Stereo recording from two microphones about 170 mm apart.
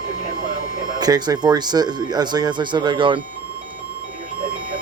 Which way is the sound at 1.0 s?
25° right (ahead or behind).